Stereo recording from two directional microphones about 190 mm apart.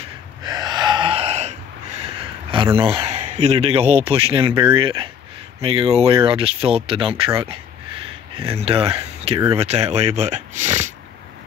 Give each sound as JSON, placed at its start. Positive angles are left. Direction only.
{"t": 0.4, "sound": "gasp", "side_deg": -20}
{"t": 2.5, "sound": "a man's voice", "side_deg": -25}
{"t": 8.4, "sound": "speech", "side_deg": -30}